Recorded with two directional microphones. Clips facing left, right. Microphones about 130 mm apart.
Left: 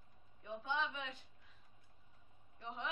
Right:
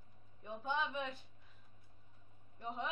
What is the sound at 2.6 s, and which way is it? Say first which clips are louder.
Speech: right 4 dB; 45° right (ahead or behind).